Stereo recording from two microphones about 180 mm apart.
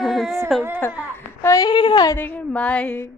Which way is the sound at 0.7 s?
10° left (ahead or behind).